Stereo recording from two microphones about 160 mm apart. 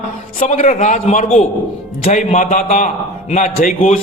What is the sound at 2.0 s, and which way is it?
A man's voice, 50° left (ahead or behind).